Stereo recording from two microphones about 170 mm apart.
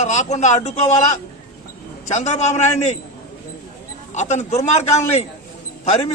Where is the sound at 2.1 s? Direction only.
45° left (ahead or behind).